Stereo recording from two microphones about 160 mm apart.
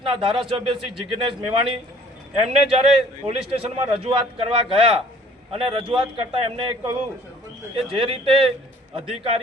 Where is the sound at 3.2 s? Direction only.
40° right (ahead or behind).